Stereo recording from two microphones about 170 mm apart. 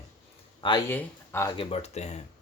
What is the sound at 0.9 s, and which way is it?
Speech, 15° left (ahead or behind).